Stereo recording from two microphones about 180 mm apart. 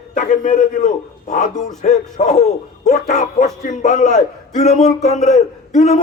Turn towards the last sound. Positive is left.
turn(degrees=40)  # may be behind; listen again after turning